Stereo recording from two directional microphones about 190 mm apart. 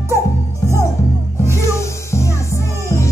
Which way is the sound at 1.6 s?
15° left (ahead or behind).